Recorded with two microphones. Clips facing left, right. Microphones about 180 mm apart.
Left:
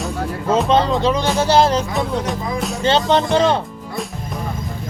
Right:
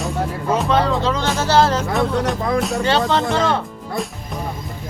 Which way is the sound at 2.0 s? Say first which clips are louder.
Right 2 dB; 60° right (ahead or behind).